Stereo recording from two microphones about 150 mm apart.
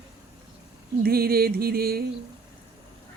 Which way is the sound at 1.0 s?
90° right.